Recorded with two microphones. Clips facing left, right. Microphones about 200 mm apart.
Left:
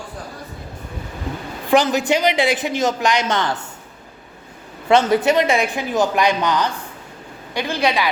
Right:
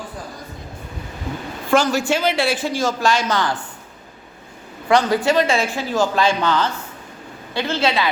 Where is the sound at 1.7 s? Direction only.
20° left (ahead or behind).